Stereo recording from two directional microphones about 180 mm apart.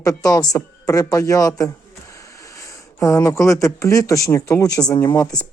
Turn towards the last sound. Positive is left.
turn(degrees=20)  # may be behind; listen again after turning